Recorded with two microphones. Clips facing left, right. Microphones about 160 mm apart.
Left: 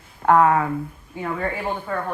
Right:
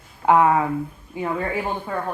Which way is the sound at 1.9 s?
15° right (ahead or behind).